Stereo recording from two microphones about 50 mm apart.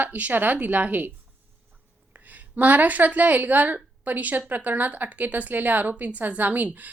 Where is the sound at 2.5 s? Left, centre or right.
Right.